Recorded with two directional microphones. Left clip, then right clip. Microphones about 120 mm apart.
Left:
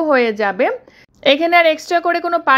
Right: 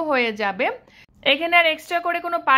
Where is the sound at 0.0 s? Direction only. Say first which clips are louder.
Left 6 dB; 45° left (ahead or behind).